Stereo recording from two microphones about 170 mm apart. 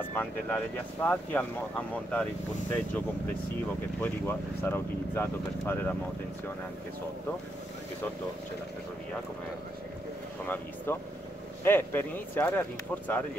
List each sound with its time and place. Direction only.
0.1 s speech: 10° left (ahead or behind)
4.0 s speech: 10° left (ahead or behind)
10.4 s speech: 10° left (ahead or behind)